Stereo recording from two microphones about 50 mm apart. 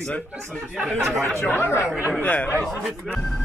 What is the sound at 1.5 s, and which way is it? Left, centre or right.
Speech, left.